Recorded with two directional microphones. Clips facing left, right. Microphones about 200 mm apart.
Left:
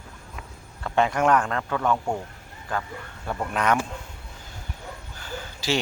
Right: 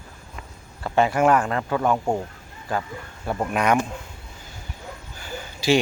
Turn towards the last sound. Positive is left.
turn(degrees=-15)  # may be behind; listen again after turning